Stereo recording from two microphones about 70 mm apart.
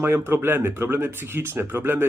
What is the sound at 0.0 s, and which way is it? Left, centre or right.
Speech, right.